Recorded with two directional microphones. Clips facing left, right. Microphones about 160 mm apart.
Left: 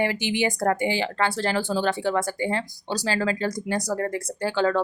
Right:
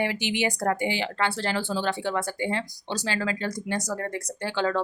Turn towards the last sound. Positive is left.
turn(degrees=45)  # may be behind; listen again after turning